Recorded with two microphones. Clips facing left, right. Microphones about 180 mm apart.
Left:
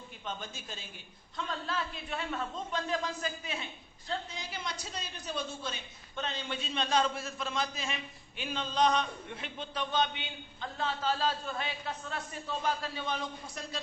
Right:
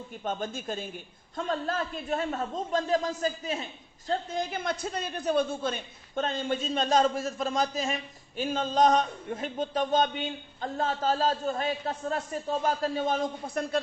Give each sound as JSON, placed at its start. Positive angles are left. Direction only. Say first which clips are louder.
{"t": 0.3, "sound": "a man's voice", "louder": "right 9 dB", "side_deg": -50}
{"t": 4.1, "sound": "a man's voice", "louder": "right 8 dB", "side_deg": -50}